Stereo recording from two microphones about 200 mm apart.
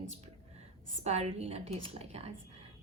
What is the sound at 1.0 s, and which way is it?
A woman's voice, 30° right (ahead or behind).